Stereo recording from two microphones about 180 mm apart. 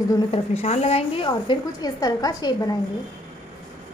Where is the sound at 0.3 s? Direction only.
35° left (ahead or behind); by 2.7 s 20° left (ahead or behind).